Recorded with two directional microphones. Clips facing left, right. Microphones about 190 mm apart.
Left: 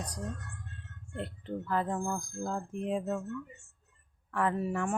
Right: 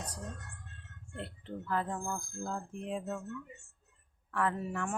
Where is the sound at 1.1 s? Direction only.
15° left (ahead or behind).